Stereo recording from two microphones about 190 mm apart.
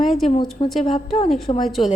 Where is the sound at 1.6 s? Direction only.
Centre (ahead or behind).